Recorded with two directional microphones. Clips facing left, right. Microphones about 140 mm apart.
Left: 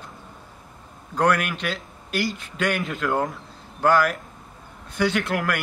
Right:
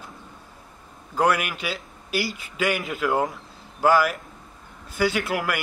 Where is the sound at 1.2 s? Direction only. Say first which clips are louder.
Left 1 dB; 5° right (ahead or behind).